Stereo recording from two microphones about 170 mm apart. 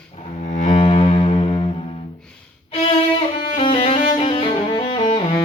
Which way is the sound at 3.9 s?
40° left (ahead or behind).